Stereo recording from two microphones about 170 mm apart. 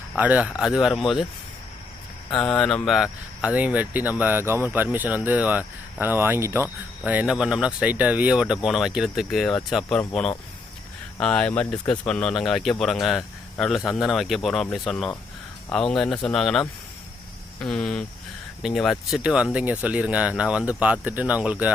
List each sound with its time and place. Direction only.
0.2 s speech: 10° right (ahead or behind)
2.4 s speech: 5° left (ahead or behind)